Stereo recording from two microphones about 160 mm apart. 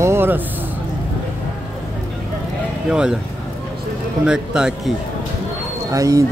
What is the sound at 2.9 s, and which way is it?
Speech, 5° right (ahead or behind).